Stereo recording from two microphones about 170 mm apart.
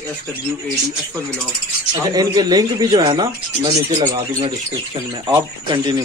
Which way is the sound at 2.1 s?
25° right (ahead or behind).